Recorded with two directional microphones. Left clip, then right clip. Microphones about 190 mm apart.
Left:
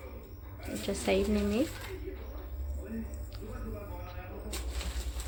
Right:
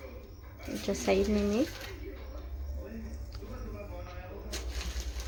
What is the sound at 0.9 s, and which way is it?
Speech, 5° right (ahead or behind).